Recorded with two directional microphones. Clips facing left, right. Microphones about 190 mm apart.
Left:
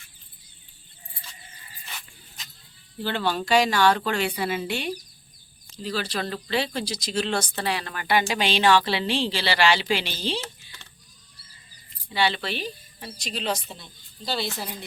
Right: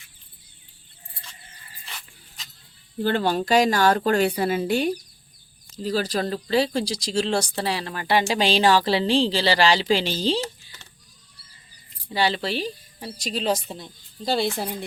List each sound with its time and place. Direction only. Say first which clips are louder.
3.0 s a woman's voice: right 4 dB; 45° right (ahead or behind)
12.0 s a woman's voice: right 2 dB; 35° right (ahead or behind); by 14.8 s 55° right (ahead or behind)